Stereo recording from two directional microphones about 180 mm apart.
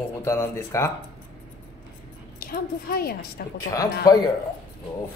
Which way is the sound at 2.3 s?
55° left (ahead or behind).